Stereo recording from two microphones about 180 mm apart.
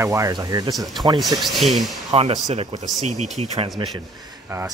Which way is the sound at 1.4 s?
Centre (ahead or behind).